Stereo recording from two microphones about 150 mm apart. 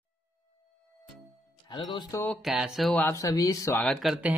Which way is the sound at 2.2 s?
Centre (ahead or behind).